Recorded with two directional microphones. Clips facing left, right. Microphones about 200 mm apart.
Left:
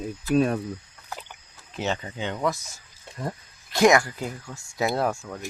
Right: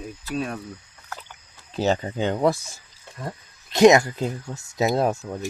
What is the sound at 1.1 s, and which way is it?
Rowboat, 15° left (ahead or behind).